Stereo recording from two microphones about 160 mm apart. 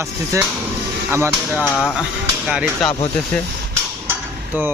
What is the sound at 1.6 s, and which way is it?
Speech, 10° left (ahead or behind).